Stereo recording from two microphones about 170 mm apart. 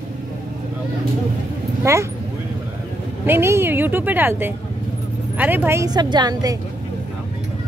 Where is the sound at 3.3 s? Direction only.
15° right (ahead or behind).